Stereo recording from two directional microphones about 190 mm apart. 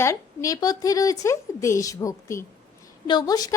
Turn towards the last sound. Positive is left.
turn(degrees=20)  # may be behind; listen again after turning